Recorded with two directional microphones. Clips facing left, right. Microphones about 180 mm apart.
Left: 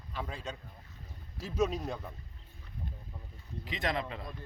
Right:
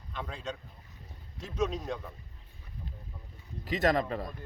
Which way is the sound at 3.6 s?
45° right (ahead or behind).